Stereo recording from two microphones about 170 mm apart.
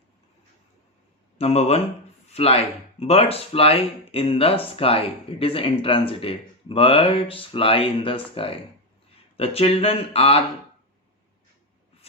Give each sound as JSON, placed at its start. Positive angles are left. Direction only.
{"t": 1.4, "sound": "speech", "side_deg": 35}